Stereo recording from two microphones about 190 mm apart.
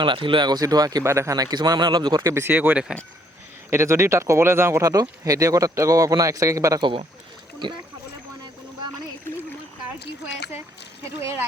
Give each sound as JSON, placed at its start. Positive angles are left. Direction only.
{"t": 0.0, "sound": "speech", "side_deg": -25}
{"t": 10.0, "sound": "speech", "side_deg": 60}
{"t": 11.2, "sound": "speech", "side_deg": -15}